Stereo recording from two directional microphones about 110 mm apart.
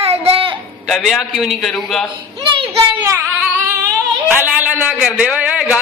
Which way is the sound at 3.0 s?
20° right (ahead or behind).